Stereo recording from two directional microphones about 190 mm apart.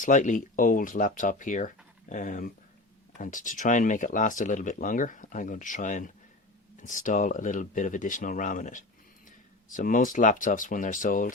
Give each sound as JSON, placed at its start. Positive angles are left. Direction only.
{"t": 0.0, "sound": "speech", "side_deg": 40}